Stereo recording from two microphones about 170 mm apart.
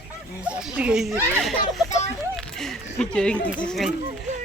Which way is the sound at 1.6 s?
45° left (ahead or behind).